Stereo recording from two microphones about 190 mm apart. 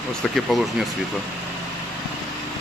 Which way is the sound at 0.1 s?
Centre (ahead or behind).